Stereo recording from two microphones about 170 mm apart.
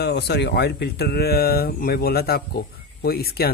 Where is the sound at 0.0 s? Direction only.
70° left (ahead or behind).